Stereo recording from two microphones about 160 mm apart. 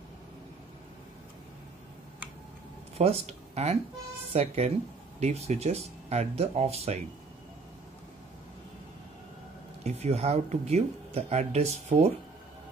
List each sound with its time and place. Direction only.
3.0 s speech: 40° right (ahead or behind)
9.8 s speech: 40° right (ahead or behind)